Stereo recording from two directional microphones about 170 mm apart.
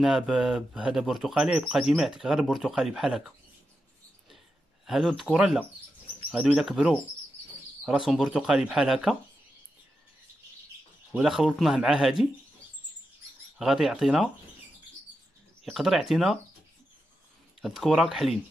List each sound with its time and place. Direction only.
0.0 s speech: 5° right (ahead or behind)
4.8 s speech: centre (ahead or behind)
11.1 s speech: 5° right (ahead or behind)
13.6 s speech: centre (ahead or behind)
15.6 s speech: centre (ahead or behind)
17.6 s speech: centre (ahead or behind)